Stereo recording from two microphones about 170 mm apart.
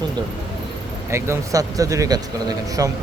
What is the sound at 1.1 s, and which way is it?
Speech, 20° right (ahead or behind).